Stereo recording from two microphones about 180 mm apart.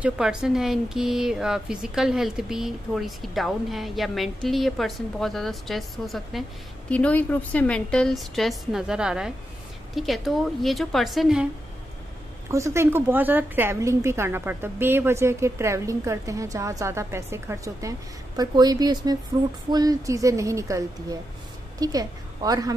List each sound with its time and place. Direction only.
0.0 s a woman's voice: 5° right (ahead or behind)
12.4 s a woman's voice: 15° right (ahead or behind)
19.3 s music: 20° right (ahead or behind)
19.7 s a woman's voice: 20° right (ahead or behind)